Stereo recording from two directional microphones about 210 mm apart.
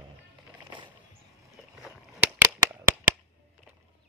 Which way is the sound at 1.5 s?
5° right (ahead or behind).